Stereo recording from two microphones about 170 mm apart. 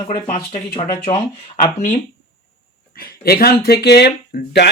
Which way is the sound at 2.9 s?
65° left (ahead or behind).